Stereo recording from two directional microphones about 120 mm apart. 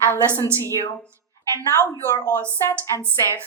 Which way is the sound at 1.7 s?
25° left (ahead or behind).